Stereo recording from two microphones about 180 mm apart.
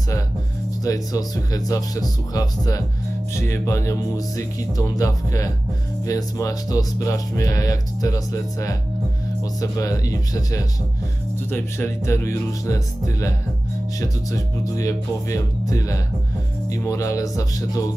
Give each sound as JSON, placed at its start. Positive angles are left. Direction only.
{"t": 0.8, "sound": "speech", "side_deg": 20}